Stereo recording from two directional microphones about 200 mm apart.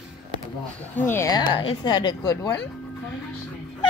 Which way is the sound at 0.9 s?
10° left (ahead or behind).